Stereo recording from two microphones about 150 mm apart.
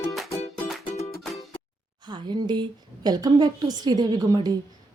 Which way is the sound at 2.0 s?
30° right (ahead or behind).